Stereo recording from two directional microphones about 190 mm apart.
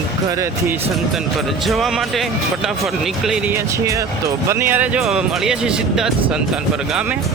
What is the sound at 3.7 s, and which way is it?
Speech, 15° right (ahead or behind).